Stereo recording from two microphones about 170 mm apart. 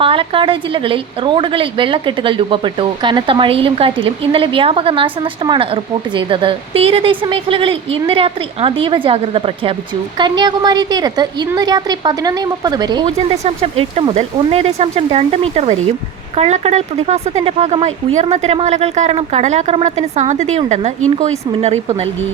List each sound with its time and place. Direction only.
0.0 s a woman's voice: 30° right (ahead or behind)
13.1 s a woman's voice: 35° right (ahead or behind)